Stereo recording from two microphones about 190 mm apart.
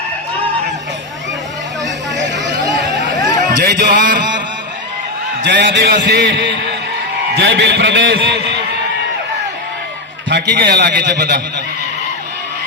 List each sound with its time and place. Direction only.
2.1 s vehicle: 70° right (ahead or behind)
3.6 s speech: 60° right (ahead or behind)
5.4 s a man's voice: 65° right (ahead or behind)
10.2 s a man's voice: 60° right (ahead or behind)